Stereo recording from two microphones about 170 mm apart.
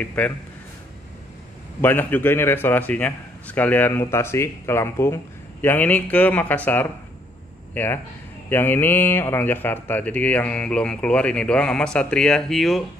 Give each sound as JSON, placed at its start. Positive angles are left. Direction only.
{"t": 0.0, "sound": "a man's voice", "side_deg": 10}
{"t": 1.8, "sound": "a man's voice", "side_deg": 10}